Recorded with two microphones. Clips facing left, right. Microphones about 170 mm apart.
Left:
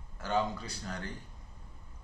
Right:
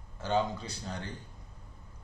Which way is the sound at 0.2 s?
20° right (ahead or behind).